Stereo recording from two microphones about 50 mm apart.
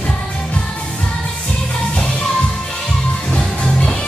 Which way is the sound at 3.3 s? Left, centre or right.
Left.